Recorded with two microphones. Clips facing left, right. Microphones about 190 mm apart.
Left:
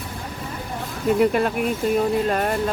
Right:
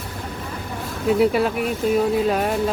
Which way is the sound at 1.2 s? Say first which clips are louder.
Even; 5° right (ahead or behind).